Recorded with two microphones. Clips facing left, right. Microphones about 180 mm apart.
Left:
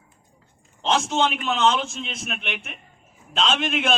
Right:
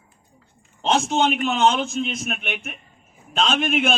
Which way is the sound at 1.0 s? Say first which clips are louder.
Right 3 dB; 50° right (ahead or behind).